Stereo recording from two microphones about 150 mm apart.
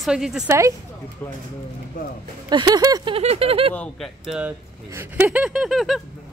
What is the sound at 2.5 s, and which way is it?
Speech, 25° right (ahead or behind).